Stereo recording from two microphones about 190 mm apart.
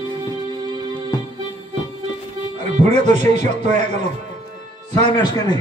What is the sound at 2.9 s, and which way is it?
A man's voice, 35° right (ahead or behind).